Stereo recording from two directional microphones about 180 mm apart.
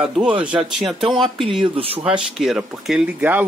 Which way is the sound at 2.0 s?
5° right (ahead or behind).